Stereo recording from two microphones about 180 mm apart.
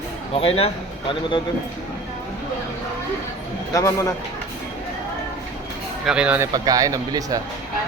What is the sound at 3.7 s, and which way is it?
Speech, 15° left (ahead or behind).